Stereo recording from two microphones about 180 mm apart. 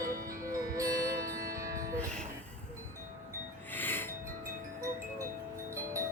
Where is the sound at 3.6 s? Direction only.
10° left (ahead or behind).